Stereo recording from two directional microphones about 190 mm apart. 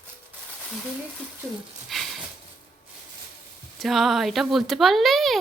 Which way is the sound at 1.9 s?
Centre (ahead or behind).